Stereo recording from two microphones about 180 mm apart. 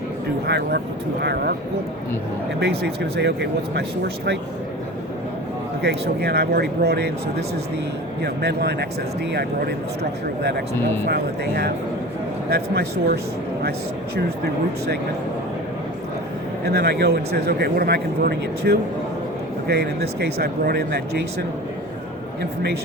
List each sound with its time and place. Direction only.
0.4 s a man's voice: 65° right (ahead or behind)
2.6 s speech: 70° right (ahead or behind)
5.8 s a man's voice: 65° right (ahead or behind)
14.2 s a man's voice: 65° right (ahead or behind)
16.6 s a man's voice: 65° right (ahead or behind)